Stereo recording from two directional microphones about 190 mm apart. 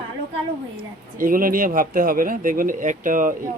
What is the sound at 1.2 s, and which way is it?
Speech, 45° right (ahead or behind).